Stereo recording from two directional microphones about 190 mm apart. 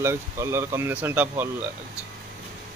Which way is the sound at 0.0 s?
15° right (ahead or behind).